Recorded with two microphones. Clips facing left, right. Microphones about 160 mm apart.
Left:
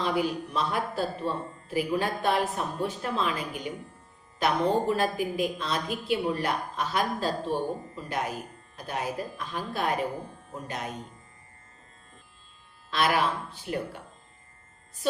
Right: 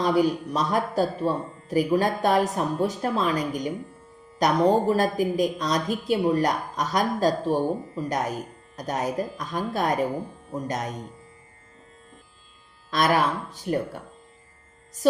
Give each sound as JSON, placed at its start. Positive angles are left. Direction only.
{"t": 0.0, "sound": "a woman's voice", "side_deg": -40}
{"t": 12.9, "sound": "speech", "side_deg": -45}